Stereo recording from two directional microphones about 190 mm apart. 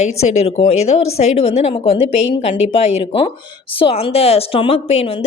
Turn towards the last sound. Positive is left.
turn(degrees=30)  # may be behind; listen again after turning